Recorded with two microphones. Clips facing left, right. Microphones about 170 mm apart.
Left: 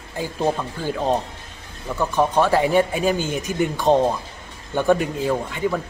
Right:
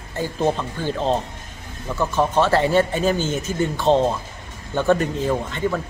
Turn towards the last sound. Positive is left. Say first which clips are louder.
# even
turn(degrees=5)  # may be behind; listen again after turning